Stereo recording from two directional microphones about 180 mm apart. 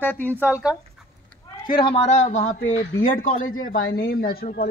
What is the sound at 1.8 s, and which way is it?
A man's voice, 35° left (ahead or behind).